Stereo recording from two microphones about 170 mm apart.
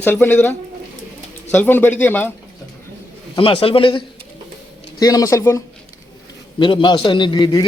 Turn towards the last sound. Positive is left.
turn(degrees=25)  # may be behind; listen again after turning